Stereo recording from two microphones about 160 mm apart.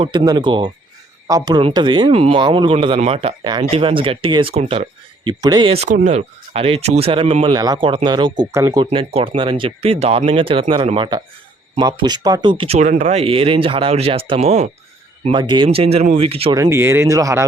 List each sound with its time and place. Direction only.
0.0 s speech: 30° right (ahead or behind)
5.7 s speech: 45° right (ahead or behind)
12.9 s speech: 50° right (ahead or behind)
15.2 s speech: 30° right (ahead or behind)
16.6 s speech: 15° right (ahead or behind)